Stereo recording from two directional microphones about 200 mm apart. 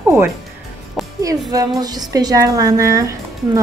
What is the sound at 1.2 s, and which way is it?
A woman's voice, 20° right (ahead or behind).